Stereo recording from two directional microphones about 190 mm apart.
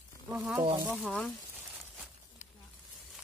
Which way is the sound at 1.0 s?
5° left (ahead or behind).